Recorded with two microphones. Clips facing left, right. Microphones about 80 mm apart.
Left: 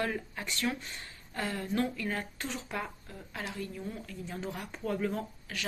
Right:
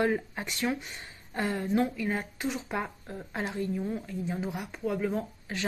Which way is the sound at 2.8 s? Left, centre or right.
Right.